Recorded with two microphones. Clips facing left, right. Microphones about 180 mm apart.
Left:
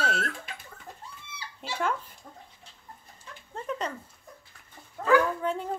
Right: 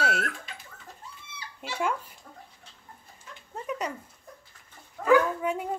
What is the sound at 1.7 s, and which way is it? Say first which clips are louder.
Speech: right 1 dB; 10° right (ahead or behind).